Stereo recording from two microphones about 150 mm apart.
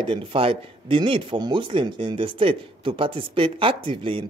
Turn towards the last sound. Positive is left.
turn(degrees=-35)  # may be behind; listen again after turning